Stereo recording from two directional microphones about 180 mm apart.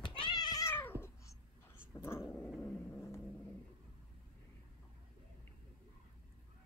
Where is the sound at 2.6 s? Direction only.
15° left (ahead or behind).